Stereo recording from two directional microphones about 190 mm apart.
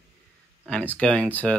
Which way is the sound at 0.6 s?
5° left (ahead or behind).